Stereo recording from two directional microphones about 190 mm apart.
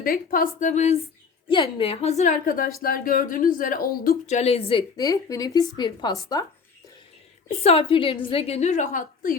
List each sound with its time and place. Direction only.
0.0 s a woman's voice: 50° left (ahead or behind)
1.5 s a woman's voice: 25° left (ahead or behind); by 4.4 s 50° left (ahead or behind)
4.4 s a woman's voice: 35° left (ahead or behind)
7.4 s a woman's voice: 30° left (ahead or behind)